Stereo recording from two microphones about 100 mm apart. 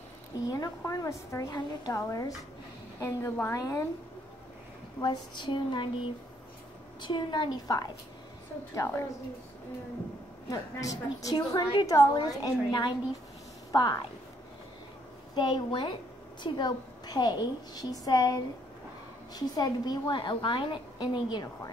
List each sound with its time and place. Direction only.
0.5 s a woman's voice: 40° left (ahead or behind)
5.0 s a woman's voice: 50° left (ahead or behind)
7.0 s a woman's voice: 50° left (ahead or behind)
8.7 s a woman's voice: 30° left (ahead or behind)
10.5 s a woman's voice: 35° left (ahead or behind)
15.3 s a woman's voice: 50° left (ahead or behind)